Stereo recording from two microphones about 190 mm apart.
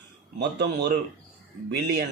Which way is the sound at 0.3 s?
60° right (ahead or behind).